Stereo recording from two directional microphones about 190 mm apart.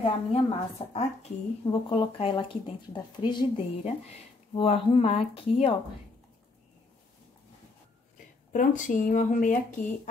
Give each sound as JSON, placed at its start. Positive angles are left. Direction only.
{"t": 0.0, "sound": "speech", "side_deg": 30}
{"t": 8.5, "sound": "speech", "side_deg": 40}